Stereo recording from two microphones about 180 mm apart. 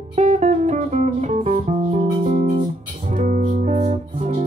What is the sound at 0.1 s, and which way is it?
Music, 40° right (ahead or behind).